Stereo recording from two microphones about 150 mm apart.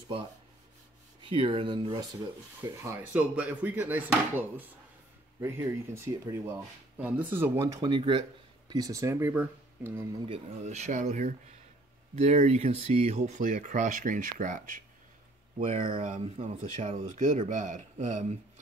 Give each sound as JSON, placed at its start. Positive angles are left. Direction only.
{"t": 1.3, "sound": "speech", "side_deg": -35}
{"t": 2.6, "sound": "speech", "side_deg": -20}
{"t": 3.1, "sound": "speech", "side_deg": -10}
{"t": 10.2, "sound": "speech", "side_deg": -45}
{"t": 16.0, "sound": "speech", "side_deg": -55}